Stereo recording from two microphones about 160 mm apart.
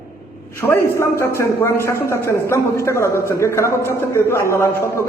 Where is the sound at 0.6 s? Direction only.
15° left (ahead or behind).